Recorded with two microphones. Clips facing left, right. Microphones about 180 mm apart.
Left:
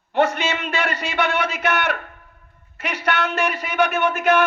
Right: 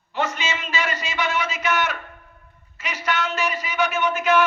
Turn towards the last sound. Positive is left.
turn(degrees=55)  # may be behind; listen again after turning